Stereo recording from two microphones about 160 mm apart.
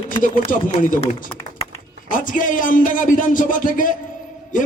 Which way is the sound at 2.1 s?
55° left (ahead or behind).